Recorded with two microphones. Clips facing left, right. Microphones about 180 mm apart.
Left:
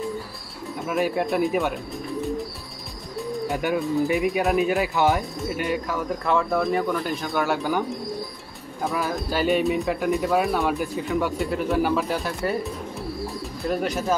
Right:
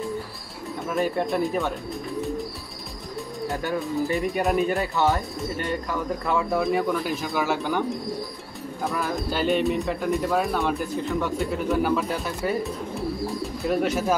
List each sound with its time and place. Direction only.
0.8 s speech: 5° left (ahead or behind)
3.4 s speech: 15° left (ahead or behind)
4.3 s speech: centre (ahead or behind)
4.9 s speech: 15° left (ahead or behind)
8.8 s speech: centre (ahead or behind)
13.7 s speech: centre (ahead or behind)